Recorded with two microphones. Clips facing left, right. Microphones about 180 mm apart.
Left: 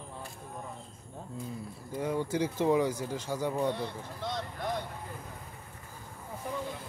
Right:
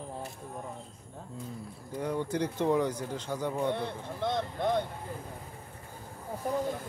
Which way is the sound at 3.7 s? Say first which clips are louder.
Right 2 dB; 55° right (ahead or behind).